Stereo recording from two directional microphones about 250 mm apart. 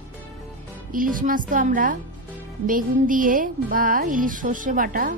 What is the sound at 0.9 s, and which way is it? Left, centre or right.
Speech, right.